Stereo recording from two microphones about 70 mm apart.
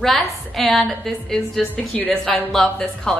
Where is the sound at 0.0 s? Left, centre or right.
Centre.